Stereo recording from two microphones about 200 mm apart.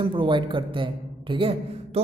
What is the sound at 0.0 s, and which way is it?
A woman's voice, 25° right (ahead or behind).